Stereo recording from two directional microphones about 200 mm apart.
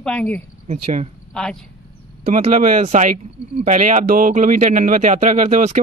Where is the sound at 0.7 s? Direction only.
35° right (ahead or behind).